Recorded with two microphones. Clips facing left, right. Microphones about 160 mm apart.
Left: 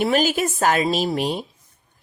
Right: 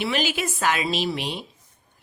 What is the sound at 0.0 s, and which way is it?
A woman's voice, 45° left (ahead or behind).